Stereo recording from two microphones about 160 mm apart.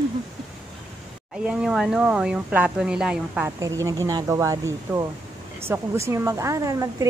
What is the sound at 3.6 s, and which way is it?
A woman's voice, 20° right (ahead or behind).